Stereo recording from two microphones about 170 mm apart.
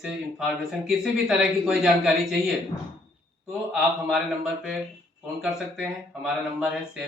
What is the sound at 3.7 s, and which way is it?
Speech, centre (ahead or behind).